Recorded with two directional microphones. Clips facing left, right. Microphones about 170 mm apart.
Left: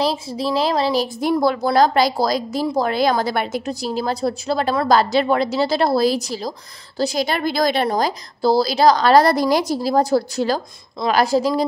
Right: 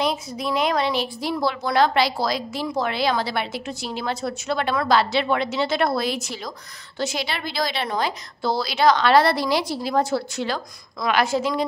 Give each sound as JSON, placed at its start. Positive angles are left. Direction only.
{"t": 0.0, "sound": "a woman's voice", "side_deg": 30}